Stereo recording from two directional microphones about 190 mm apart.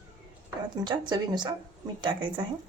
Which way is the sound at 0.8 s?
25° right (ahead or behind).